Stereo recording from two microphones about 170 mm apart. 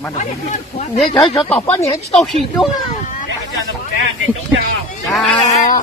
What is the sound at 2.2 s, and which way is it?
Speech, centre (ahead or behind).